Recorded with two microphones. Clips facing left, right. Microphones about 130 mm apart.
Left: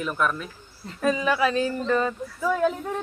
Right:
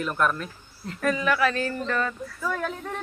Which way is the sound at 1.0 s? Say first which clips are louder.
Left 1 dB; 20° left (ahead or behind).